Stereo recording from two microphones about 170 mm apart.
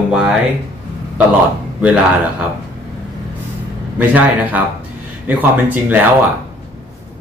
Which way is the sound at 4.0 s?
10° right (ahead or behind).